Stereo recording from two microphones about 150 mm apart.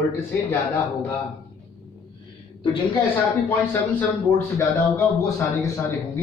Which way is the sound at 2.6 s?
35° left (ahead or behind).